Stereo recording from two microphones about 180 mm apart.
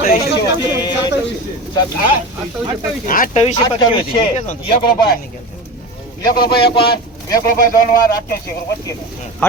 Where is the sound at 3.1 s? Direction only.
50° left (ahead or behind).